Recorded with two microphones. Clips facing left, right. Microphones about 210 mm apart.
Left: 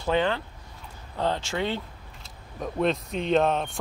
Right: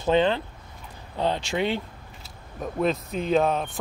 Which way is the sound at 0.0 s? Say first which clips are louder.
Right 3 dB; 20° right (ahead or behind).